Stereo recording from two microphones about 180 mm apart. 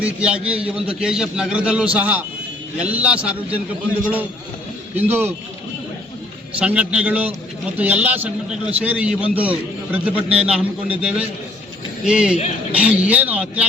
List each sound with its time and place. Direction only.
0.0 s a man's voice: 5° right (ahead or behind)
4.9 s a man's voice: 10° right (ahead or behind)
6.6 s a man's voice: 5° right (ahead or behind)